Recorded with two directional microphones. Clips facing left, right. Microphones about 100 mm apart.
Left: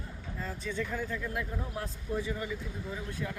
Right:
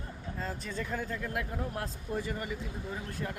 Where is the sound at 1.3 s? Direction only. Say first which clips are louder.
Right 1 dB; 55° right (ahead or behind).